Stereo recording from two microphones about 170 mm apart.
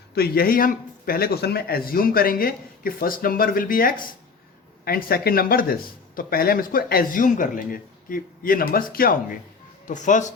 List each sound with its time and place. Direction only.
0.1 s speech: 65° left (ahead or behind); by 10.3 s 45° left (ahead or behind)